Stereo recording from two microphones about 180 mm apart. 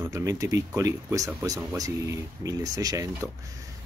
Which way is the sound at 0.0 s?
20° right (ahead or behind).